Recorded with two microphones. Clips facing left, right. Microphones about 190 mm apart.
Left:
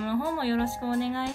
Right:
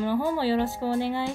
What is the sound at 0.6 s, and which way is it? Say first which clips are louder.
Speech: right 1 dB; 15° right (ahead or behind).